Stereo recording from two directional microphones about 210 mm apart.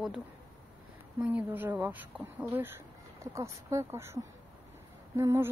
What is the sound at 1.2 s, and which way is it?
Speech, 10° right (ahead or behind).